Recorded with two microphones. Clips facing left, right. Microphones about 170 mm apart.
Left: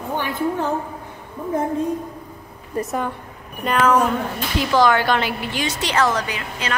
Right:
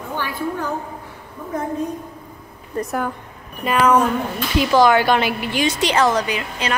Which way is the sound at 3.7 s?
10° right (ahead or behind).